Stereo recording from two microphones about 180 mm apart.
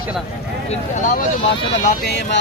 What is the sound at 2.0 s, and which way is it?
Speech, 65° left (ahead or behind).